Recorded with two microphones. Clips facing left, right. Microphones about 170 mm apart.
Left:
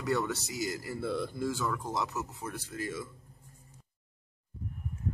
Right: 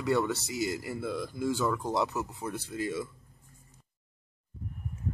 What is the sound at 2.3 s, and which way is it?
Speech, 20° right (ahead or behind).